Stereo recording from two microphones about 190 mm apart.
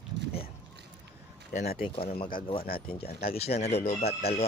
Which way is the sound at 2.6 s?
50° left (ahead or behind).